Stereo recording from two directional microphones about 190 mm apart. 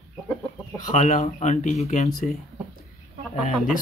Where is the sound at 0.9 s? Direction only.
35° left (ahead or behind).